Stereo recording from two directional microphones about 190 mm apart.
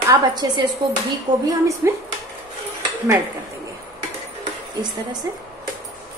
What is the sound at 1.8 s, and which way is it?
Speech, 15° right (ahead or behind).